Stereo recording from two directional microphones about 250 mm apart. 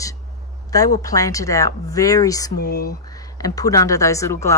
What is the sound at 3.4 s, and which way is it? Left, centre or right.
Speech, centre.